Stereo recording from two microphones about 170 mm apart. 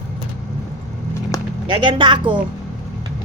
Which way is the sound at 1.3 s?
20° left (ahead or behind).